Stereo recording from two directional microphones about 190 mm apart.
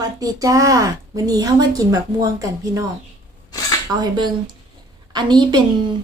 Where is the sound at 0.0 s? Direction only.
20° right (ahead or behind).